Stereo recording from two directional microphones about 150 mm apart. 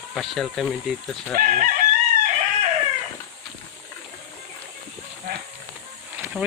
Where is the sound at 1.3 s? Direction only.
65° right (ahead or behind).